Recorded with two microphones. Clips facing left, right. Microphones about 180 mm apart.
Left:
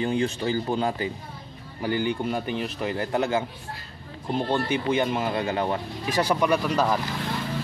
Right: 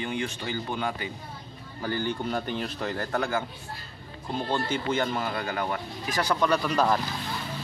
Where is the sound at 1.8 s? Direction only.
15° left (ahead or behind).